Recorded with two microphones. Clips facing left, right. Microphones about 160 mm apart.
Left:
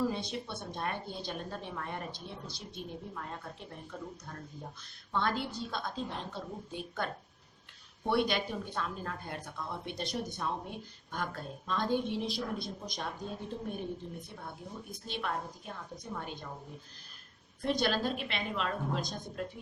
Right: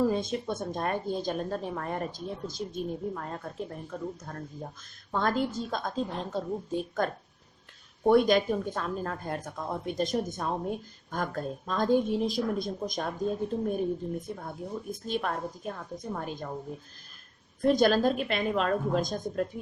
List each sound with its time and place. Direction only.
0.0 s speech: 45° right (ahead or behind)
5.1 s speech: 45° right (ahead or behind)
17.6 s speech: 45° right (ahead or behind)